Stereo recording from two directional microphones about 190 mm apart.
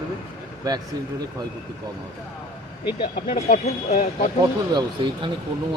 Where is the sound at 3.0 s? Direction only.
55° left (ahead or behind).